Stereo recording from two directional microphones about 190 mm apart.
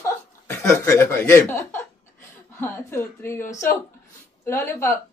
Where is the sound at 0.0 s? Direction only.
15° left (ahead or behind).